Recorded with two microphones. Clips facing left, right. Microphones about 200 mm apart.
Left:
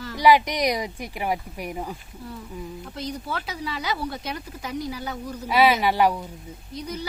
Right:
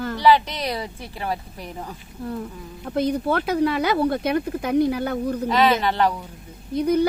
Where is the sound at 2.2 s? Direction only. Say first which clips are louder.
Right 6 dB; 55° right (ahead or behind).